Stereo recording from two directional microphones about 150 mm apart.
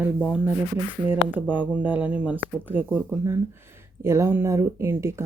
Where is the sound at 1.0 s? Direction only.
10° right (ahead or behind).